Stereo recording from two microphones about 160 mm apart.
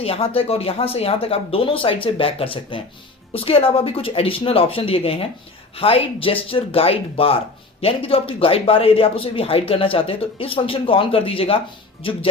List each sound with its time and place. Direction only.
0.0 s speech: 35° left (ahead or behind)